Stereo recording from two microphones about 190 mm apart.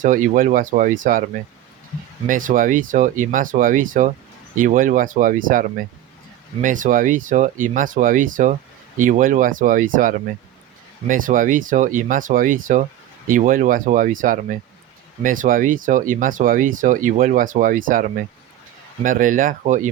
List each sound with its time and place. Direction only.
0.0 s speech: 45° right (ahead or behind)
2.2 s speech: 45° right (ahead or behind)
19.0 s speech: 45° right (ahead or behind)